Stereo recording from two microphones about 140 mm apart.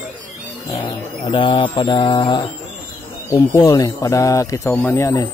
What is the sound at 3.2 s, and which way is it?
Speech, 25° left (ahead or behind).